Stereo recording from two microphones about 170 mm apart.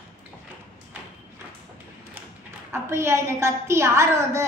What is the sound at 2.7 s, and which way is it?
A woman's voice, 15° right (ahead or behind).